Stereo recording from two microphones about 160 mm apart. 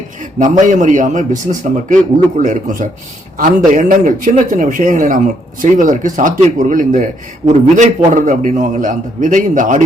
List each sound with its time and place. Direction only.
0.3 s a man's voice: 55° right (ahead or behind)